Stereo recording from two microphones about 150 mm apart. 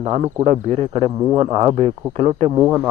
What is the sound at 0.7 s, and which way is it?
Speech, 40° right (ahead or behind).